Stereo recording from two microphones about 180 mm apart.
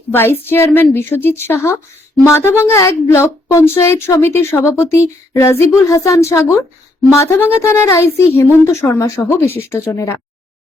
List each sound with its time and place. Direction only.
0.1 s speech: 10° left (ahead or behind)